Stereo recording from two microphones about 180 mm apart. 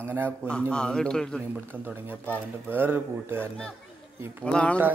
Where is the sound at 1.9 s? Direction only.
10° right (ahead or behind).